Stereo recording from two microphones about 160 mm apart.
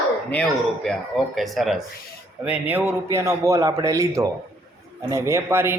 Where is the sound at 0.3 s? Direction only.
5° left (ahead or behind).